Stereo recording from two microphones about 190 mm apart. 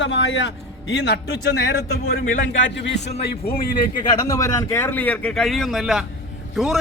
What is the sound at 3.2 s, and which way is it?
Speech, 50° left (ahead or behind).